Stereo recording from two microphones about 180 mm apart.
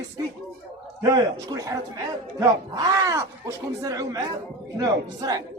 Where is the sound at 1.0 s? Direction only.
20° right (ahead or behind).